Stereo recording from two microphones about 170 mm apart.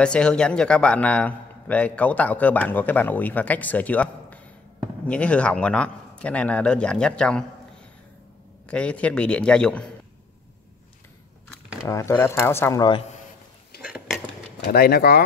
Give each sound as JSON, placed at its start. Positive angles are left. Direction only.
{"t": 0.0, "sound": "a man's voice", "side_deg": 5}
{"t": 8.6, "sound": "a man's voice", "side_deg": 5}
{"t": 11.9, "sound": "a man's voice", "side_deg": 15}
{"t": 13.8, "sound": "a sound", "side_deg": -5}
{"t": 14.7, "sound": "speech", "side_deg": 65}